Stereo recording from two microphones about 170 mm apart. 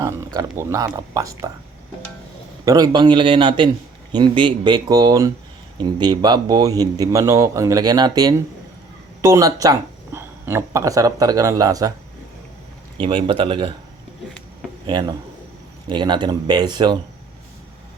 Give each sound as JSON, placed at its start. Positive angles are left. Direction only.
{"t": 0.3, "sound": "speech", "side_deg": -15}
{"t": 2.6, "sound": "speech", "side_deg": -20}
{"t": 13.0, "sound": "speech", "side_deg": -30}
{"t": 14.8, "sound": "speech", "side_deg": -25}